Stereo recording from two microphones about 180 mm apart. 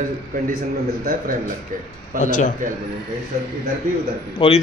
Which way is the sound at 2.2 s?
45° left (ahead or behind).